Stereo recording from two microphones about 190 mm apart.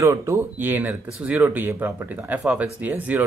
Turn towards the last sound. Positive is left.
turn(degrees=-10)  # may be behind; listen again after turning